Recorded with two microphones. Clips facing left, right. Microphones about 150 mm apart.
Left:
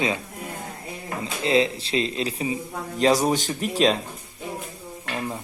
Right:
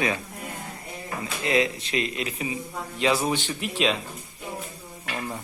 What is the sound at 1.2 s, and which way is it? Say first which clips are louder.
Speech: left 3 dB; 30° left (ahead or behind).